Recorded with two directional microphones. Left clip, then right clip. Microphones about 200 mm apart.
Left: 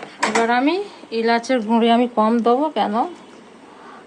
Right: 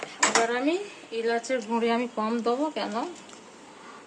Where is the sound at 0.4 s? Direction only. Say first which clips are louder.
Left 8 dB; 45° left (ahead or behind).